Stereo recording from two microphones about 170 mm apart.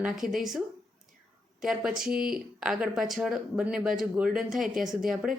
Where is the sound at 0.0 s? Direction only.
Centre (ahead or behind).